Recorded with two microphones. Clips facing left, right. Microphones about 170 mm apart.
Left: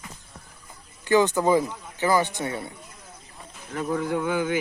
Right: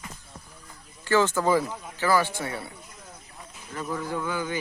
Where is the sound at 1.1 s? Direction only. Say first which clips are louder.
Left 3 dB; 15° left (ahead or behind).